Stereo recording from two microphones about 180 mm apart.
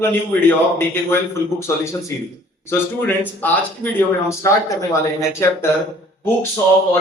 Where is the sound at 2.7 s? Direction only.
10° left (ahead or behind).